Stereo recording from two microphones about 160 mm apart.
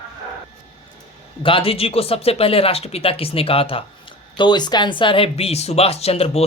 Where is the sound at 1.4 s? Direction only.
35° left (ahead or behind).